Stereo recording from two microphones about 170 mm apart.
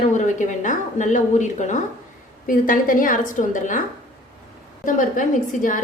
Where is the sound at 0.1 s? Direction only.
45° left (ahead or behind).